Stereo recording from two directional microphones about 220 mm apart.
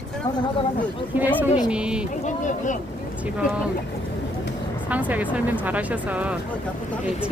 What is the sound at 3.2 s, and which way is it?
Speech, 5° right (ahead or behind).